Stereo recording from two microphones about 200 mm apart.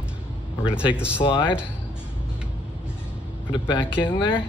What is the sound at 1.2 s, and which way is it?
Speech, 25° left (ahead or behind).